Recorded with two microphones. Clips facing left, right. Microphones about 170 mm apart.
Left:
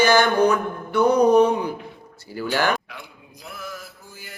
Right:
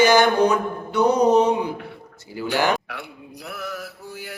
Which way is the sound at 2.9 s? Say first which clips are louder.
Right 6 dB; 65° right (ahead or behind).